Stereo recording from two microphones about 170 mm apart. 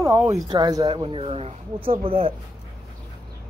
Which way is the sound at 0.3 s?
25° right (ahead or behind).